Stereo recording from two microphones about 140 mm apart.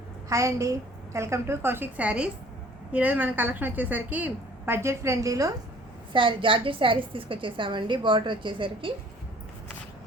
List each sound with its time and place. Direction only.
0.3 s a woman's voice: 20° right (ahead or behind)
6.1 s a woman's voice: 35° right (ahead or behind)